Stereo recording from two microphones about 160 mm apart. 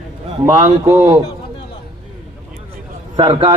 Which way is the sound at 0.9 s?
15° right (ahead or behind).